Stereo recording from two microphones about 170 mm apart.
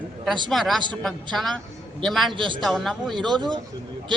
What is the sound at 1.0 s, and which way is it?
A man's voice, centre (ahead or behind).